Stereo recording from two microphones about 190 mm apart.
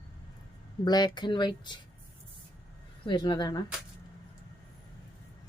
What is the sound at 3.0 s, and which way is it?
Speech, 20° left (ahead or behind).